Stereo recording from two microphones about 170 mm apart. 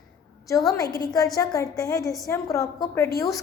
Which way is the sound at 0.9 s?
20° left (ahead or behind).